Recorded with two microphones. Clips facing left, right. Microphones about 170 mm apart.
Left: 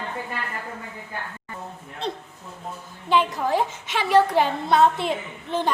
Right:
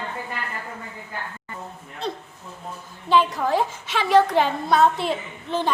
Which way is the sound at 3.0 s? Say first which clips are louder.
Right 2 dB; 15° left (ahead or behind).